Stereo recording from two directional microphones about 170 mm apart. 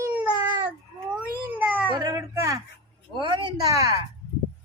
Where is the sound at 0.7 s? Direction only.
10° right (ahead or behind).